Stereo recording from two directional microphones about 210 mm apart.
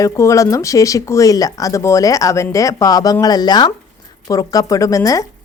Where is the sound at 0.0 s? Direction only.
15° left (ahead or behind).